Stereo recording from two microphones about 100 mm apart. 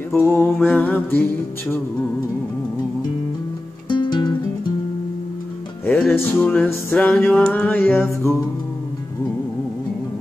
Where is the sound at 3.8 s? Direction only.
50° left (ahead or behind).